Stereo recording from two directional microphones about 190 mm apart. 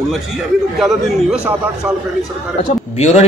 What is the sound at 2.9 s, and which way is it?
Speech, 35° left (ahead or behind).